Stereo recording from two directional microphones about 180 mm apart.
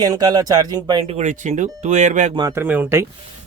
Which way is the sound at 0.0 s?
20° right (ahead or behind).